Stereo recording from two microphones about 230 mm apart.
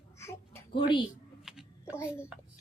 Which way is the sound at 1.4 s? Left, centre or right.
Centre.